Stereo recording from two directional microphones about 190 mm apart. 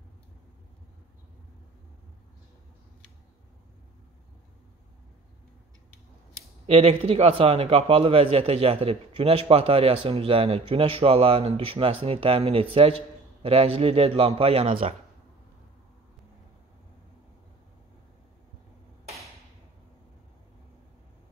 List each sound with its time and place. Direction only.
6.7 s a man's voice: 30° right (ahead or behind)